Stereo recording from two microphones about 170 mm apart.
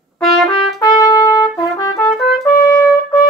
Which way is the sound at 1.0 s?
20° left (ahead or behind).